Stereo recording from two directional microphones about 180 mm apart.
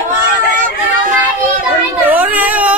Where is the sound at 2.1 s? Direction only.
10° right (ahead or behind).